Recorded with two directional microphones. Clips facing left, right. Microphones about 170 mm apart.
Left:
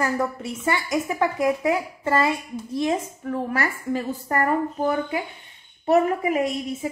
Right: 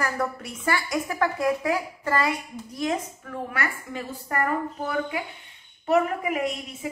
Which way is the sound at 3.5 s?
35° left (ahead or behind).